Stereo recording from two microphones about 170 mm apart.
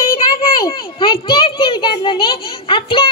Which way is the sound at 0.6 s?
30° left (ahead or behind).